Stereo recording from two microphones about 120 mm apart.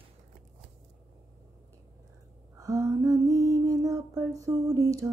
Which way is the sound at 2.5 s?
30° right (ahead or behind).